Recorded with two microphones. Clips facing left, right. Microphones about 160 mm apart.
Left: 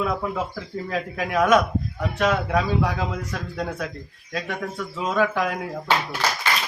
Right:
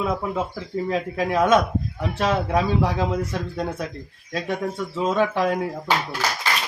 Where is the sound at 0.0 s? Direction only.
20° right (ahead or behind).